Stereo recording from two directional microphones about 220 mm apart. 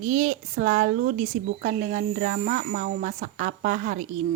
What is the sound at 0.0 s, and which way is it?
Speech, 35° right (ahead or behind).